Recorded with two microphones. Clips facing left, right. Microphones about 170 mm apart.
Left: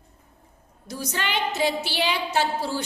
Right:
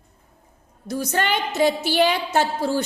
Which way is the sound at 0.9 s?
50° right (ahead or behind).